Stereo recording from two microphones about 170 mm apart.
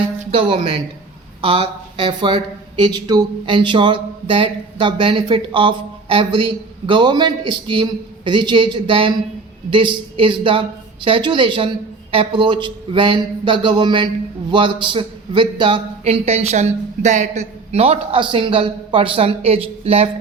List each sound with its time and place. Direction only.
0.3 s a man's voice: 35° right (ahead or behind)